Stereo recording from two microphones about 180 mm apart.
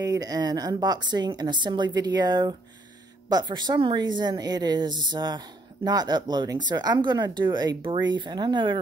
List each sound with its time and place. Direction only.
0.1 s speech: 20° right (ahead or behind)